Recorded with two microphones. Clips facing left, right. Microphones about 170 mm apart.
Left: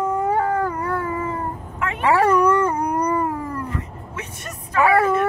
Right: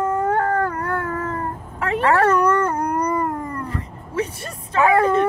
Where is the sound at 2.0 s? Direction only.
10° left (ahead or behind).